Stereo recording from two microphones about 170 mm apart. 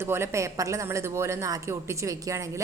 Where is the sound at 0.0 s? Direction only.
15° right (ahead or behind).